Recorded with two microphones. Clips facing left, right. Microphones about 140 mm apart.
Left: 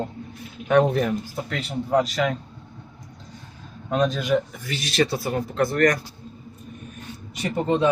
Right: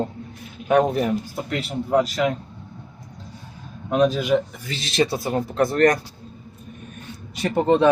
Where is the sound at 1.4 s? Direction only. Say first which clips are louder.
Right 2 dB; 5° right (ahead or behind).